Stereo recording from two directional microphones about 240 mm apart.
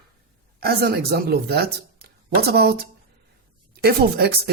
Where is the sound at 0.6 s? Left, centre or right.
Right.